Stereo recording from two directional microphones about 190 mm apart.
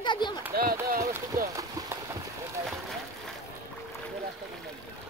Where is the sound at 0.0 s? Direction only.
25° left (ahead or behind).